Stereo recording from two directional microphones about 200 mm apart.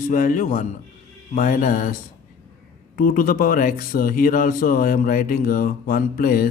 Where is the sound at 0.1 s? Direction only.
40° left (ahead or behind).